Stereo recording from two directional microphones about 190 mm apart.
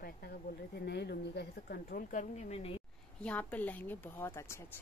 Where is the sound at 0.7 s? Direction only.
60° left (ahead or behind); by 2.8 s 30° left (ahead or behind).